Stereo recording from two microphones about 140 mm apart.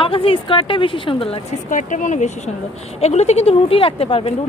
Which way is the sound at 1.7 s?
65° left (ahead or behind).